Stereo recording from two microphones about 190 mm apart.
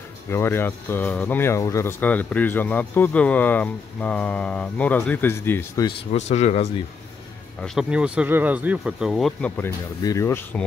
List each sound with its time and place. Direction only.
0.3 s speech: 10° left (ahead or behind)
6.1 s speech: 35° left (ahead or behind)
7.6 s speech: 5° right (ahead or behind)
9.6 s speech: 15° left (ahead or behind)